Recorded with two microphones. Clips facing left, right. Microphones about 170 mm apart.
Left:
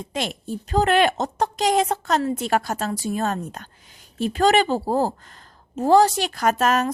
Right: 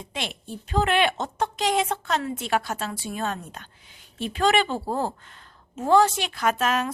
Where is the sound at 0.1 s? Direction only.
40° left (ahead or behind).